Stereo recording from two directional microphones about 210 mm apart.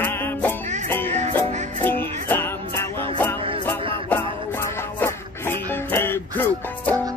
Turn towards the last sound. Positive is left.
turn(degrees=10)  # may be behind; listen again after turning